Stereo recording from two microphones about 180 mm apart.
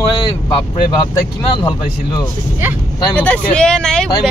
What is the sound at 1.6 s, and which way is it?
Speech, 25° left (ahead or behind).